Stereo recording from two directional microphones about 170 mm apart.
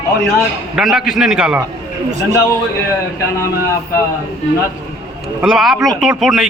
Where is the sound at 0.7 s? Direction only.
Centre (ahead or behind).